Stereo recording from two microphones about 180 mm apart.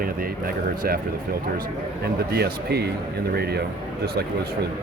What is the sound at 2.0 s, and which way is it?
Speech, 60° right (ahead or behind).